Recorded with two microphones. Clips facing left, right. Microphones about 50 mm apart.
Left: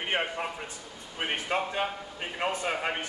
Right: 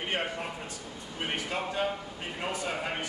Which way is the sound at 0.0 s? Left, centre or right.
Centre.